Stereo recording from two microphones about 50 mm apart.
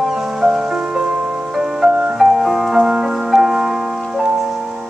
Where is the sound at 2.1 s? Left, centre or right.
Centre.